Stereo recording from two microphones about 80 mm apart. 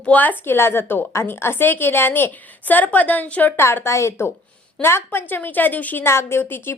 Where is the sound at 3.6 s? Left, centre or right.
Left.